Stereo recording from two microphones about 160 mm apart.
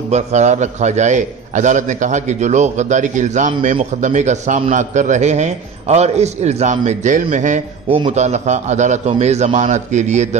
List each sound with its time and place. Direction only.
0.1 s a man's voice: 45° right (ahead or behind)